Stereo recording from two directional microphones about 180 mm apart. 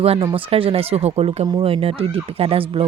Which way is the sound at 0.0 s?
35° right (ahead or behind).